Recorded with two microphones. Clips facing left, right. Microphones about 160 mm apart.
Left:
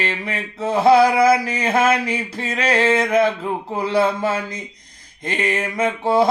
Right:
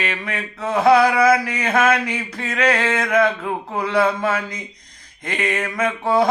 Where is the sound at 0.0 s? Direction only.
30° left (ahead or behind).